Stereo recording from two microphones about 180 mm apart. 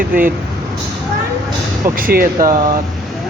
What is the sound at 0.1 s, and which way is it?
Speech, 50° right (ahead or behind).